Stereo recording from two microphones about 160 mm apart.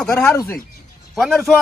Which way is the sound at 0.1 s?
10° left (ahead or behind).